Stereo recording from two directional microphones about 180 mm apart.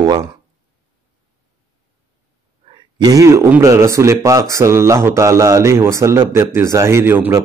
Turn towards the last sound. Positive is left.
turn(degrees=-10)  # may be behind; listen again after turning